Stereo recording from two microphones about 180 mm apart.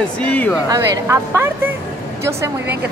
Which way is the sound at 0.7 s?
15° right (ahead or behind).